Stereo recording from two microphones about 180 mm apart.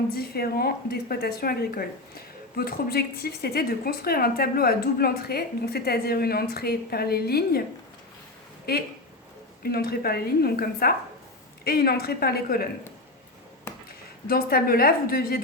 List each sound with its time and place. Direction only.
0.1 s speech: 60° left (ahead or behind)
8.7 s speech: 60° left (ahead or behind)
14.3 s speech: 55° left (ahead or behind)